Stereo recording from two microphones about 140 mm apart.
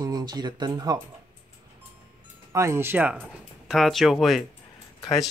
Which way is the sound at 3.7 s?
Centre (ahead or behind).